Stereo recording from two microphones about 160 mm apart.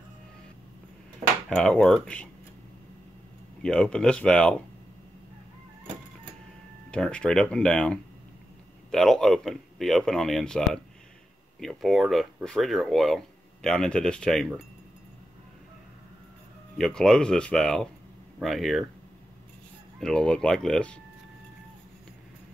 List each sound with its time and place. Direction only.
1.5 s speech: 5° left (ahead or behind)
3.6 s speech: 5° left (ahead or behind)
6.9 s speech: 5° left (ahead or behind)
16.7 s speech: 5° left (ahead or behind)
20.0 s speech: 5° left (ahead or behind)